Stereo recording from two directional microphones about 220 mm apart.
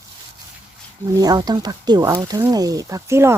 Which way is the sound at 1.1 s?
15° right (ahead or behind).